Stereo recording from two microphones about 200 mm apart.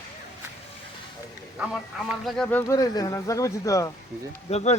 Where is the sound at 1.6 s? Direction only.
5° right (ahead or behind).